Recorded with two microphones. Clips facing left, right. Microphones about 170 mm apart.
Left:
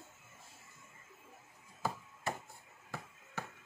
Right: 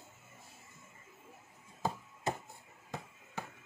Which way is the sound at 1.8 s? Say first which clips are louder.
Right 3 dB; 20° right (ahead or behind).